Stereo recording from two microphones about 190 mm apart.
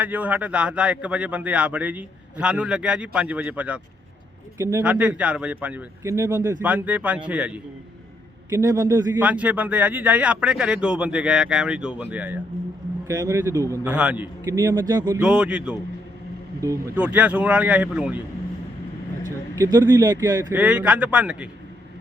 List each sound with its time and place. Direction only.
0.0 s speech: 10° right (ahead or behind)
8.4 s speech: 15° right (ahead or behind)
9.2 s speech: 5° right (ahead or behind)
15.2 s speech: 5° right (ahead or behind)
19.5 s speech: 20° right (ahead or behind)
20.6 s speech: 5° right (ahead or behind)